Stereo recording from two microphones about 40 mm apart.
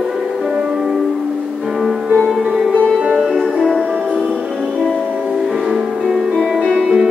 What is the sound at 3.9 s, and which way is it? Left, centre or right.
Music, right.